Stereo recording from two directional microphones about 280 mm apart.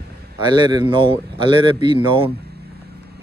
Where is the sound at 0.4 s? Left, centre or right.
Centre.